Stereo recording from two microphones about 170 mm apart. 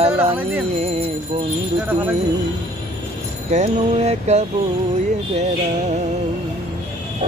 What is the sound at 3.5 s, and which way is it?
Music, 40° right (ahead or behind).